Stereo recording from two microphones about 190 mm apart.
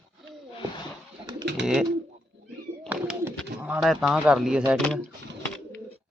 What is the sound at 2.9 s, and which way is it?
Bird, 10° right (ahead or behind).